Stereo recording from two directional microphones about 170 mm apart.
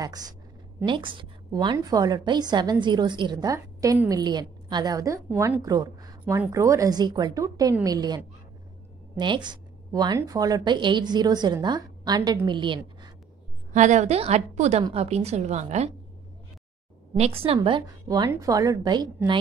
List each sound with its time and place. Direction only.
0.8 s a woman's voice: 30° right (ahead or behind)
13.7 s a woman's voice: 45° right (ahead or behind)
17.2 s a woman's voice: 35° right (ahead or behind)